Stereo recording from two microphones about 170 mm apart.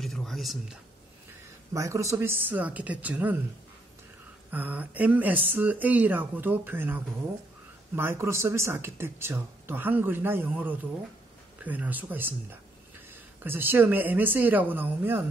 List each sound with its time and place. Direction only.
0.0 s a sound: centre (ahead or behind)
1.7 s speech: 20° right (ahead or behind)
4.5 s speech: 10° right (ahead or behind)